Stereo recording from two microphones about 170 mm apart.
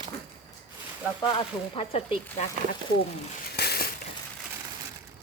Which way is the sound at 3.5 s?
70° left (ahead or behind).